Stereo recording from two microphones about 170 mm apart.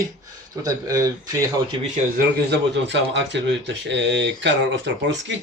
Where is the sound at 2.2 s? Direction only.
85° right.